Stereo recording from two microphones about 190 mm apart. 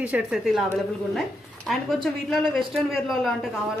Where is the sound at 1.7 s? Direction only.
Centre (ahead or behind).